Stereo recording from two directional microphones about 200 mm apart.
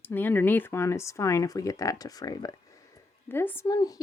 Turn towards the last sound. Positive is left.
turn(degrees=20)  # may be behind; listen again after turning